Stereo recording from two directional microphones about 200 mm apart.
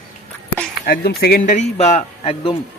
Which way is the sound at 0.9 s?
50° left (ahead or behind).